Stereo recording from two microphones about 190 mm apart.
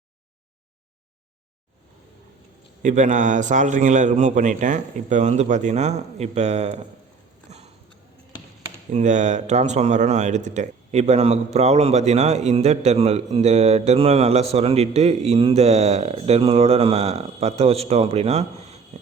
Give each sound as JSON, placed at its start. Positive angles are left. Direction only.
{"t": 2.8, "sound": "speech", "side_deg": -40}
{"t": 8.9, "sound": "speech", "side_deg": -40}